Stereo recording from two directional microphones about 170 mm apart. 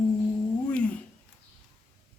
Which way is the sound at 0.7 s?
5° left (ahead or behind).